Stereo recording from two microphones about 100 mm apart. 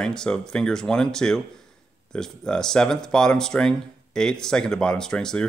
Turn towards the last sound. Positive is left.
turn(degrees=5)  # may be behind; listen again after turning